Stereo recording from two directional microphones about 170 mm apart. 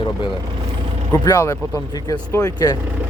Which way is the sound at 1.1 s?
15° left (ahead or behind).